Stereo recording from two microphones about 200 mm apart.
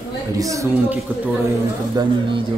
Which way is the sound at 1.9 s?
25° right (ahead or behind).